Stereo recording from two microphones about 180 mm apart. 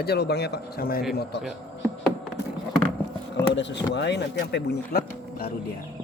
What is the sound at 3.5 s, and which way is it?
Speech, 85° left.